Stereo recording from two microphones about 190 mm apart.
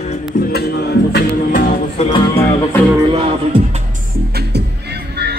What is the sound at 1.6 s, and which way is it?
Music, 40° left (ahead or behind).